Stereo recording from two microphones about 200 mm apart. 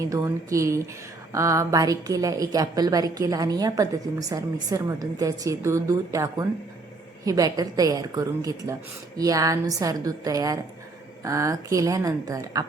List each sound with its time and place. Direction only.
0.0 s a woman's voice: 15° right (ahead or behind)